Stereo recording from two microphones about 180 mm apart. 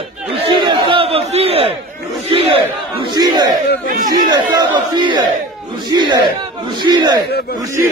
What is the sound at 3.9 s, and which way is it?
Chatter, 50° right (ahead or behind).